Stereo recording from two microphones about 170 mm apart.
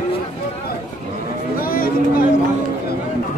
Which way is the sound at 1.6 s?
60° left (ahead or behind).